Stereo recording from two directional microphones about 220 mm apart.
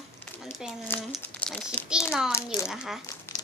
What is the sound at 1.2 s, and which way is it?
Speech, 5° left (ahead or behind).